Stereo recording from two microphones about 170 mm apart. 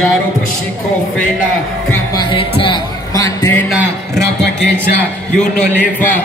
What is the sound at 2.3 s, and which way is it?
Speech, 30° left (ahead or behind).